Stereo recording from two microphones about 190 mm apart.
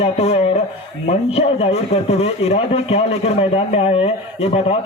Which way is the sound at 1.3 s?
35° left (ahead or behind).